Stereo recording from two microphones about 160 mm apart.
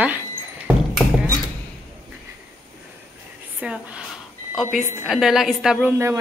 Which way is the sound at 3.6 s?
5° right (ahead or behind).